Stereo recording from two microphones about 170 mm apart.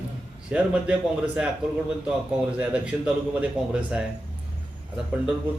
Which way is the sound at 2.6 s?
5° right (ahead or behind).